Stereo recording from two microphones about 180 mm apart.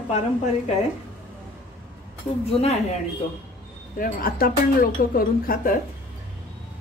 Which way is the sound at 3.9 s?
50° left (ahead or behind).